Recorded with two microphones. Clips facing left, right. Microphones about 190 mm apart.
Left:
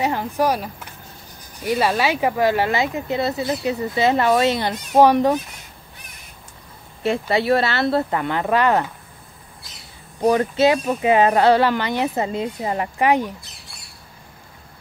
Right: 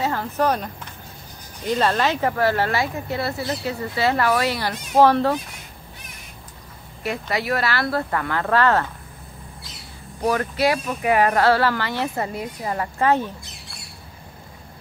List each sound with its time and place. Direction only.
0.0 s speech: 15° left (ahead or behind)
7.0 s speech: 25° left (ahead or behind)
10.2 s speech: 20° left (ahead or behind)